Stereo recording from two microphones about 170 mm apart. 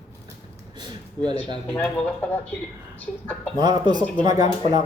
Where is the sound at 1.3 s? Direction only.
25° right (ahead or behind).